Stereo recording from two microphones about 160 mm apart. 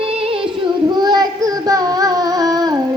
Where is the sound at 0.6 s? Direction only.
30° right (ahead or behind).